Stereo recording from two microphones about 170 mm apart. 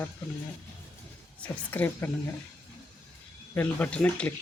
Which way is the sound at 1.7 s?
10° left (ahead or behind).